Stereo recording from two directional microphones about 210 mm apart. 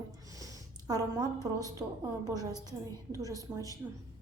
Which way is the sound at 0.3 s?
15° right (ahead or behind).